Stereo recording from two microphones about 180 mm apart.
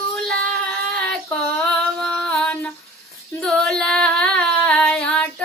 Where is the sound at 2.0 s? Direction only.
5° left (ahead or behind).